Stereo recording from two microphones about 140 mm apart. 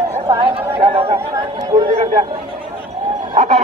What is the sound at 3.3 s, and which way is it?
Speech, 55° right (ahead or behind).